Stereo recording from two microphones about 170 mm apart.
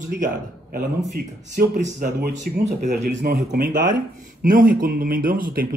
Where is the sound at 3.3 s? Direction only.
55° right (ahead or behind).